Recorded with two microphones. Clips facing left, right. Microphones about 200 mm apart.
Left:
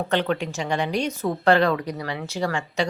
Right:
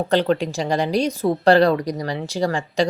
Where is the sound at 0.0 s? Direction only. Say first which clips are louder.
Right 5 dB; 35° right (ahead or behind).